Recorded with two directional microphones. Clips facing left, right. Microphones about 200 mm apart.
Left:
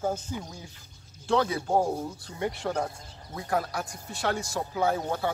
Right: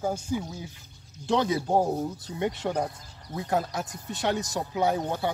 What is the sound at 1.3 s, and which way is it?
Speech, 20° right (ahead or behind).